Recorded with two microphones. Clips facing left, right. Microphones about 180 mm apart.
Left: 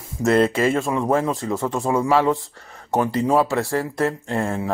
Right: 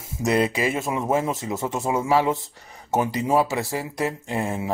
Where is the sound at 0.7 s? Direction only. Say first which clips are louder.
Left 3 dB; 20° right (ahead or behind).